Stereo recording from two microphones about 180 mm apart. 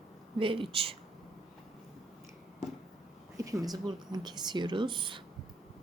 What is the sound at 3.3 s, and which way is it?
Speech, 20° right (ahead or behind).